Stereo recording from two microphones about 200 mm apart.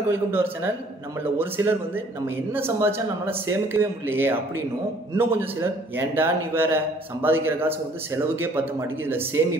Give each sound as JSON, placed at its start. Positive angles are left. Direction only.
{"t": 0.1, "sound": "a man's voice", "side_deg": -10}